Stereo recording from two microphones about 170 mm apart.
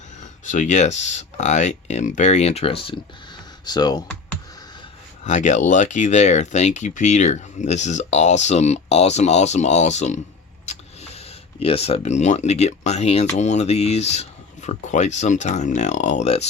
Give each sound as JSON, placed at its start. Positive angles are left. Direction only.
{"t": 0.2, "sound": "speech", "side_deg": 45}
{"t": 5.2, "sound": "speech", "side_deg": 45}
{"t": 10.7, "sound": "a sound", "side_deg": 40}
{"t": 11.6, "sound": "speech", "side_deg": 35}